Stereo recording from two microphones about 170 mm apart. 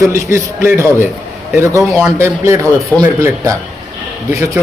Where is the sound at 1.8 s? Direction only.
Centre (ahead or behind).